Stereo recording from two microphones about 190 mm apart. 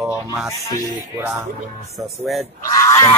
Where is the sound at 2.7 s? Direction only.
20° left (ahead or behind).